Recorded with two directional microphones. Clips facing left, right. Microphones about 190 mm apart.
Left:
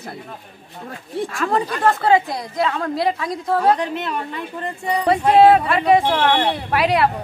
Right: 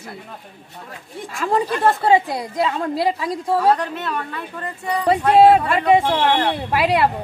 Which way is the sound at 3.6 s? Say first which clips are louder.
Left 2 dB; 20° left (ahead or behind).